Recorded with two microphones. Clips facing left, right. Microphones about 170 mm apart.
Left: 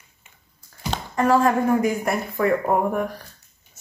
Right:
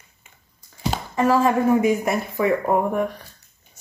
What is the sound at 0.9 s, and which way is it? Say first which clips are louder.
Speech: even; 5° right (ahead or behind).